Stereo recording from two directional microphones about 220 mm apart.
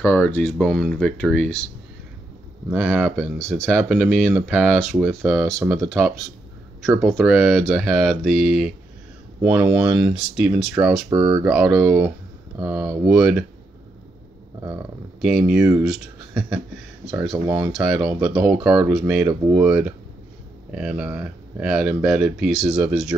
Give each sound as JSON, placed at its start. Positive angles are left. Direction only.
{"t": 0.0, "sound": "speech", "side_deg": 10}
{"t": 2.7, "sound": "speech", "side_deg": -5}
{"t": 11.1, "sound": "speech", "side_deg": -20}
{"t": 11.4, "sound": "speech", "side_deg": -5}
{"t": 15.1, "sound": "speech", "side_deg": 0}